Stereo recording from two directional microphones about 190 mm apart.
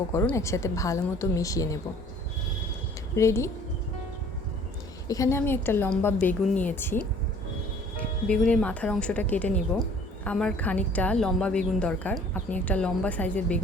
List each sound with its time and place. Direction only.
0.1 s a woman's voice: 15° left (ahead or behind)
3.2 s a woman's voice: 15° left (ahead or behind)
5.0 s a woman's voice: 15° left (ahead or behind)